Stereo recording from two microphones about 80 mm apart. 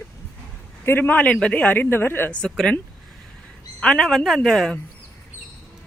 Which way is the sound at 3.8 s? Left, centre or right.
Centre.